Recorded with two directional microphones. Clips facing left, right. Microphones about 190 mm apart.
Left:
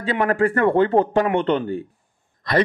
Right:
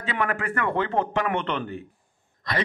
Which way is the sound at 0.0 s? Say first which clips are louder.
Left 8 dB; 35° left (ahead or behind).